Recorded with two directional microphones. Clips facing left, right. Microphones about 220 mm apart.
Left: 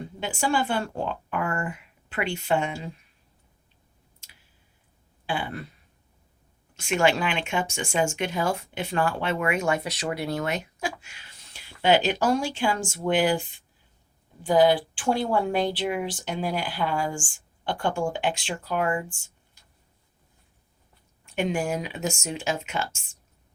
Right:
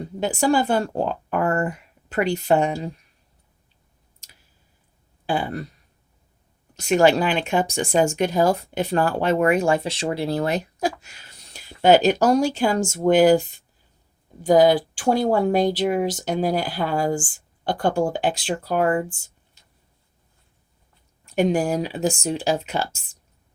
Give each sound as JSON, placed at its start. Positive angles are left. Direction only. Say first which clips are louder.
{"t": 0.2, "sound": "speech", "louder": "right 6 dB", "side_deg": -40}
{"t": 5.2, "sound": "a sound", "louder": "right 6 dB", "side_deg": -40}
{"t": 6.7, "sound": "speech", "louder": "right 6 dB", "side_deg": -40}
{"t": 21.2, "sound": "speech", "louder": "right 6 dB", "side_deg": -40}